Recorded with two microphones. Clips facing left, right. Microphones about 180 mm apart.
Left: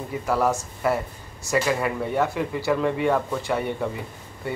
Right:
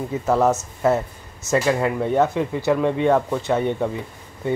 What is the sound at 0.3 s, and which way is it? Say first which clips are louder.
Speech: right 4 dB; 20° right (ahead or behind).